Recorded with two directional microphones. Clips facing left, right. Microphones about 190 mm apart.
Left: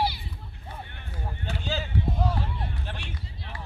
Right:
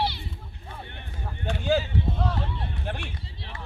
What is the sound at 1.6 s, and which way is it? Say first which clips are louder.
Run: right 9 dB; 55° right (ahead or behind).